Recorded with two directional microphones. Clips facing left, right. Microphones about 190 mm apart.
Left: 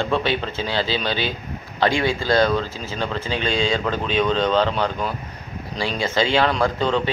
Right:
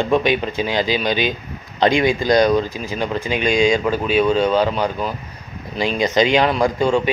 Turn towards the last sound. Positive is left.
turn(degrees=-10)  # may be behind; listen again after turning